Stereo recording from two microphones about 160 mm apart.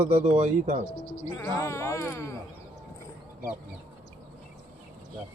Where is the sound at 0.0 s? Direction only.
40° right (ahead or behind).